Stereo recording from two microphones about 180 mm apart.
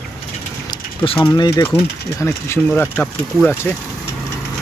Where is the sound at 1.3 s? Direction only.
20° left (ahead or behind).